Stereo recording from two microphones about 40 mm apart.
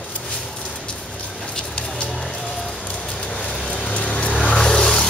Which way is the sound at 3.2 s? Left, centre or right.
Left.